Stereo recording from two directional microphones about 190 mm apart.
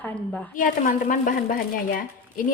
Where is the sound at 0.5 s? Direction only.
45° left (ahead or behind).